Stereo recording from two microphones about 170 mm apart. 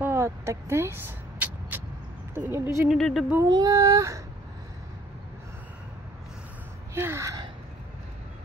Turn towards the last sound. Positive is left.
turn(degrees=-20)  # may be behind; listen again after turning